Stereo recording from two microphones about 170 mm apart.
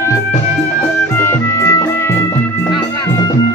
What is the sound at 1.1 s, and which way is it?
Music, 15° left (ahead or behind).